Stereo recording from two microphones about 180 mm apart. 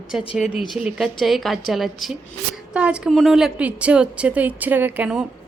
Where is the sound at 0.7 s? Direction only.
5° right (ahead or behind).